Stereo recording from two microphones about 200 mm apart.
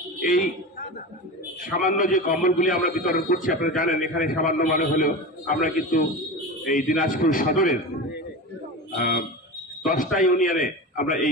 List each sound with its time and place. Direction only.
0.2 s a man's voice: 45° left (ahead or behind)
9.8 s a man's voice: 45° left (ahead or behind)